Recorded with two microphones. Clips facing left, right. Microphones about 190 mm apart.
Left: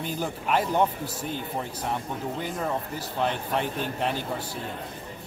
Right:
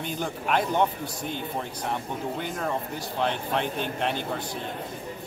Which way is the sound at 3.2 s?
5° left (ahead or behind).